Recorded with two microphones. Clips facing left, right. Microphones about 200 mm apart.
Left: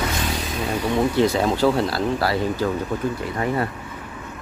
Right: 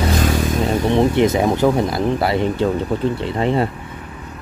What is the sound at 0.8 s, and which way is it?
Speech, 20° right (ahead or behind).